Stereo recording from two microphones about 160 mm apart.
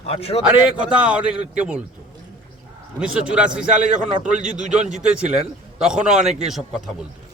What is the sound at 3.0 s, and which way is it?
A man's voice, 5° right (ahead or behind).